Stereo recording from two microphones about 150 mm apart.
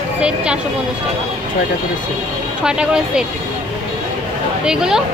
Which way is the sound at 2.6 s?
5° right (ahead or behind).